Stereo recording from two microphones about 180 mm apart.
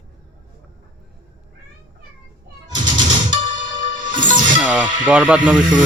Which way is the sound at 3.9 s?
45° right (ahead or behind).